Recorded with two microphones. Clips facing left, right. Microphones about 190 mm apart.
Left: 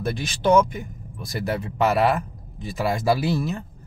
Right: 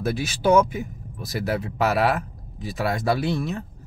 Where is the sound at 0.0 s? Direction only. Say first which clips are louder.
Right 1 dB; 5° right (ahead or behind).